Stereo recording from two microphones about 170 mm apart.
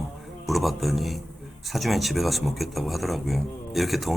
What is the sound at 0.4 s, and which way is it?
A man's voice, centre (ahead or behind).